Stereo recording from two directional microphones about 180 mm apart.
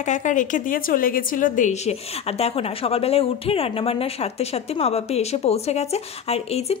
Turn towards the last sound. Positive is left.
turn(degrees=35)  # may be behind; listen again after turning